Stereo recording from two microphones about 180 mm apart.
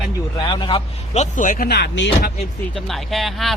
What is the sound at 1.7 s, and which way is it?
Speech, 75° left (ahead or behind).